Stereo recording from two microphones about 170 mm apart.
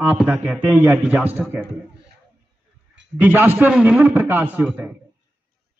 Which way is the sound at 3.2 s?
10° right (ahead or behind).